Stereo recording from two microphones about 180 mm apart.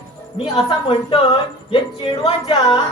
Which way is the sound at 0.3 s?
30° left (ahead or behind).